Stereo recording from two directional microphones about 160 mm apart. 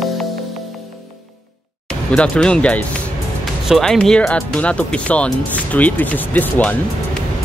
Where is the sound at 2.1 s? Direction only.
5° left (ahead or behind).